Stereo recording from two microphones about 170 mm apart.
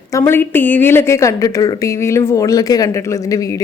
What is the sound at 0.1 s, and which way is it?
Speech, 15° left (ahead or behind).